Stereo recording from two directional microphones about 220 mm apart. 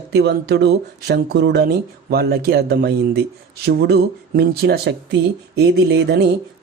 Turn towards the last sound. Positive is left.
turn(degrees=-45)  # may be behind; listen again after turning